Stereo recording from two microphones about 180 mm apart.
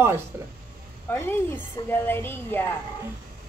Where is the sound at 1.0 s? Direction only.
10° left (ahead or behind).